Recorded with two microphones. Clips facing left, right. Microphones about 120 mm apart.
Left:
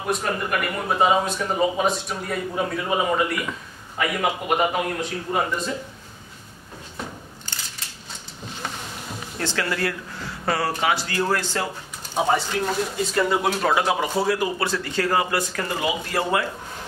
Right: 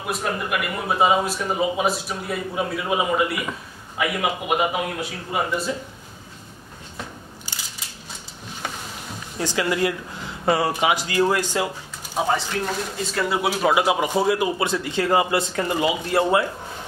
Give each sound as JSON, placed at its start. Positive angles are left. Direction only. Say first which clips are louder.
{"t": 0.0, "sound": "speech", "louder": "left 1 dB", "side_deg": -5}
{"t": 9.4, "sound": "speech", "louder": "right 3 dB", "side_deg": -15}
{"t": 12.2, "sound": "speech", "louder": "left 1 dB", "side_deg": 0}